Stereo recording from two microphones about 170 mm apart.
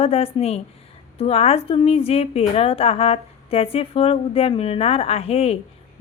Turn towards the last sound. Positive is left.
turn(degrees=35)  # may be behind; listen again after turning